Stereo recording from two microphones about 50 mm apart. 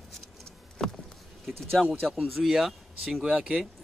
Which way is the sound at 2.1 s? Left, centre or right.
Centre.